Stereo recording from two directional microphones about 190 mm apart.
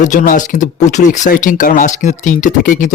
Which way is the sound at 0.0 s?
45° left (ahead or behind).